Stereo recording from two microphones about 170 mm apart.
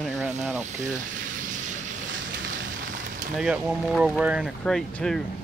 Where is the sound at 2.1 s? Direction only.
90° right.